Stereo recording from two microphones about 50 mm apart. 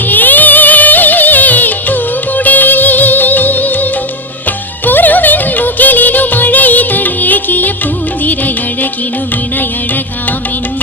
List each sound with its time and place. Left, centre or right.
0.1 s music: left
4.9 s music: left